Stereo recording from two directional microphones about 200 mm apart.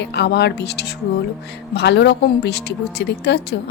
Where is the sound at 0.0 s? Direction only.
60° left (ahead or behind).